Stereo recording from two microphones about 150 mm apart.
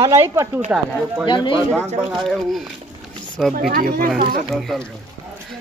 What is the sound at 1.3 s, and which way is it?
Speech, 30° left (ahead or behind).